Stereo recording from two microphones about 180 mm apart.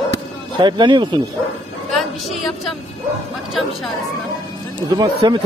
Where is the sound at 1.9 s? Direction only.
Centre (ahead or behind).